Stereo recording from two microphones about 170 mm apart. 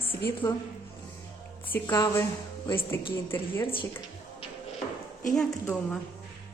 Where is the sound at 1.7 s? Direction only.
20° left (ahead or behind).